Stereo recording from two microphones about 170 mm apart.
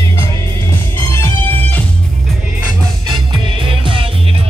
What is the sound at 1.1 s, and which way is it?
Music, 15° left (ahead or behind).